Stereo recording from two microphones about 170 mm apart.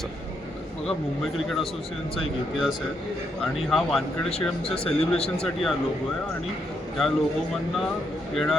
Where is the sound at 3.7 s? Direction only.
Centre (ahead or behind).